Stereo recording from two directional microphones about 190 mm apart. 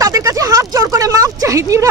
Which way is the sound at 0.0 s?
15° right (ahead or behind).